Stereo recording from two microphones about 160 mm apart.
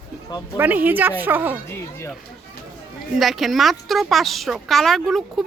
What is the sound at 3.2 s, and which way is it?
Speech, centre (ahead or behind).